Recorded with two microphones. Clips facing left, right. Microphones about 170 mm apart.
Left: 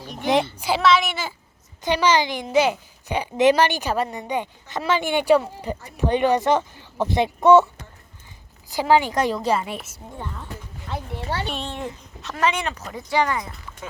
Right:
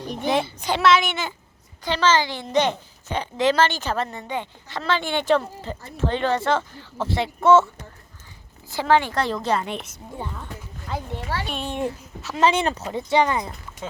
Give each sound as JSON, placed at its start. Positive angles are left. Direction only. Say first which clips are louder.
{"t": 0.2, "sound": "a woman's voice", "louder": "left 2 dB", "side_deg": 15}
{"t": 0.6, "sound": "a woman's voice", "louder": "even", "side_deg": 5}
{"t": 1.8, "sound": "a woman's voice", "louder": "left 1 dB", "side_deg": 15}
{"t": 8.7, "sound": "a woman's voice", "louder": "left 1 dB", "side_deg": 15}
{"t": 11.4, "sound": "a woman's voice", "louder": "even", "side_deg": 0}
{"t": 12.4, "sound": "speech", "louder": "right 4 dB", "side_deg": -30}